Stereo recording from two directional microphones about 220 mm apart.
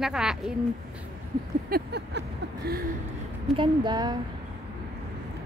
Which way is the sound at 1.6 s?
45° right (ahead or behind).